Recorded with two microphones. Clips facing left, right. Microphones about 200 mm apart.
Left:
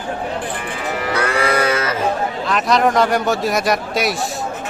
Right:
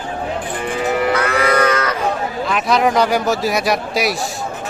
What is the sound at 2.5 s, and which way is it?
A man's voice, centre (ahead or behind).